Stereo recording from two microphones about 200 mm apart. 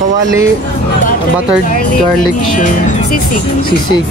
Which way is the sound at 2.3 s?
40° left (ahead or behind).